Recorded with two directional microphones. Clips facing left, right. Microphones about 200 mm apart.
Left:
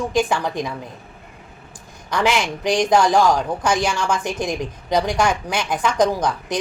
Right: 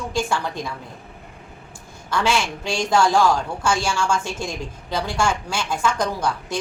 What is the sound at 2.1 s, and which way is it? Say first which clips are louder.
A woman's voice: left 2 dB; 15° left (ahead or behind).